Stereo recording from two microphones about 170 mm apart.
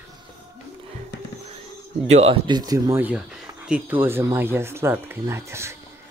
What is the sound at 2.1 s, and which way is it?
Speech, 35° right (ahead or behind).